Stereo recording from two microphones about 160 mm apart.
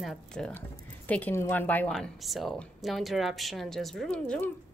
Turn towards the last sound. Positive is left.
turn(degrees=5)  # may be behind; listen again after turning